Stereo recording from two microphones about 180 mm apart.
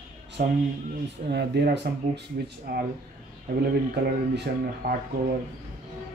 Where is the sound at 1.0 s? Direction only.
70° right (ahead or behind).